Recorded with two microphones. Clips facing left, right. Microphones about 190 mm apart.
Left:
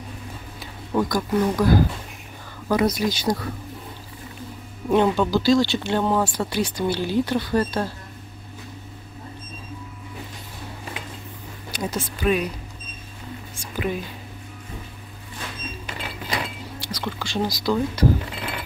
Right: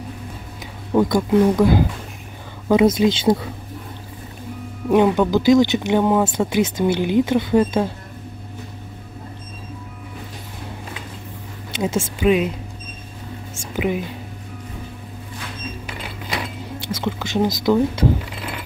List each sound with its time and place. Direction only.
0.9 s speech: 25° right (ahead or behind)
4.8 s speech: 10° right (ahead or behind)
11.7 s a sound: 25° right (ahead or behind)
12.2 s speech: 20° right (ahead or behind)
13.6 s speech: 15° right (ahead or behind)
16.8 s speech: 20° right (ahead or behind)